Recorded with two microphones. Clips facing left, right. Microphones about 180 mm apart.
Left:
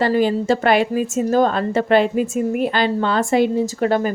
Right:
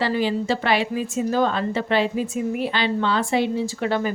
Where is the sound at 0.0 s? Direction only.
45° left (ahead or behind).